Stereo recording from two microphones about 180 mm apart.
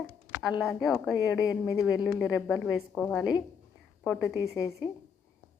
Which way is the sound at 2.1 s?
Centre (ahead or behind).